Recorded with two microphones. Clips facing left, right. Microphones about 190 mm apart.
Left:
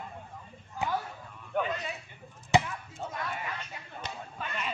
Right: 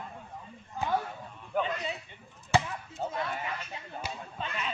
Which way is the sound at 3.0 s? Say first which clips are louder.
Right 5 dB; 40° right (ahead or behind).